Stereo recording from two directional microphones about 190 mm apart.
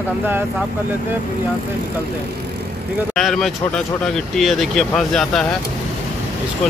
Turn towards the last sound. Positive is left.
turn(degrees=5)  # may be behind; listen again after turning